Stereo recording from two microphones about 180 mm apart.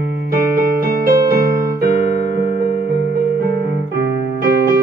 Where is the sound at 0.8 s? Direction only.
50° right (ahead or behind).